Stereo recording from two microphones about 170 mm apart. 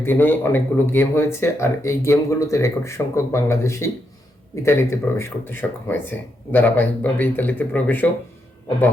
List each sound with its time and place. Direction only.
0.0 s a man's voice: 10° left (ahead or behind)